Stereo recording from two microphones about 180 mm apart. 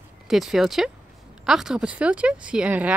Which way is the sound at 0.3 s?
Centre (ahead or behind).